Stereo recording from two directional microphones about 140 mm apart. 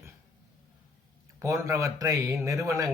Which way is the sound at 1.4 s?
20° right (ahead or behind).